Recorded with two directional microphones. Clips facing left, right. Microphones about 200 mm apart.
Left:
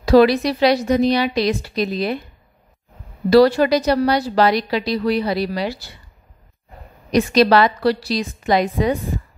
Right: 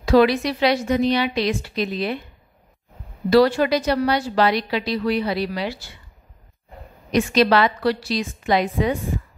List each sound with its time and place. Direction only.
0.0 s a woman's voice: 35° left (ahead or behind)
3.3 s a woman's voice: 35° left (ahead or behind)
7.1 s a woman's voice: 40° left (ahead or behind)